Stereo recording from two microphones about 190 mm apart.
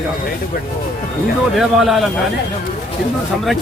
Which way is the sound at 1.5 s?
Centre (ahead or behind).